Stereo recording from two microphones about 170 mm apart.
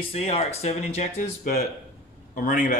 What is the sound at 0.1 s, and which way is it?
Speech, 40° left (ahead or behind).